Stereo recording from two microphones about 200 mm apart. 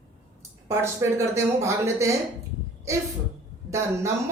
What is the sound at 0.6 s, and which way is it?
Speech, 15° right (ahead or behind).